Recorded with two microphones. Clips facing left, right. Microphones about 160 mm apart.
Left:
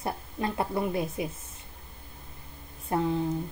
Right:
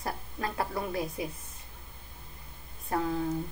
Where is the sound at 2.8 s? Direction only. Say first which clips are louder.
Left 3 dB; 25° left (ahead or behind).